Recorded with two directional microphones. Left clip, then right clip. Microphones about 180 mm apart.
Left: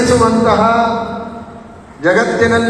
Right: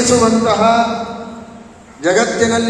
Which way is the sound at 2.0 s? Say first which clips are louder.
Left 2 dB; 30° right (ahead or behind).